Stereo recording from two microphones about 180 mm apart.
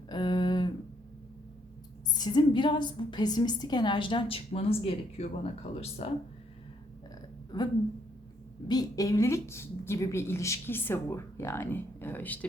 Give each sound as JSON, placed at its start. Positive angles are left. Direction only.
{"t": 0.1, "sound": "a sound", "side_deg": 25}
{"t": 2.1, "sound": "a woman's voice", "side_deg": 25}
{"t": 8.6, "sound": "a woman's voice", "side_deg": 20}